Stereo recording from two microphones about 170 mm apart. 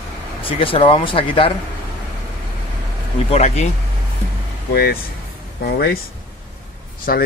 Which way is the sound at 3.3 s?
40° left (ahead or behind).